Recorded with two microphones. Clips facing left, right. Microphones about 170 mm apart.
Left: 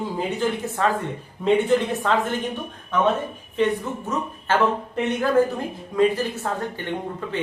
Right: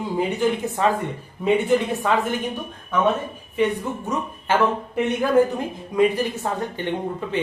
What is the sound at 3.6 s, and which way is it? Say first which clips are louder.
Speech: even; 10° right (ahead or behind).